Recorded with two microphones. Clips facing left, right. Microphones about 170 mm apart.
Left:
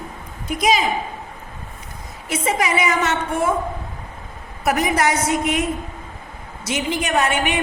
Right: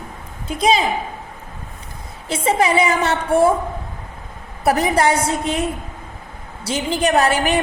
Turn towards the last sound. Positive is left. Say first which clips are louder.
# right 3 dB
turn(degrees=-35)  # may be behind; listen again after turning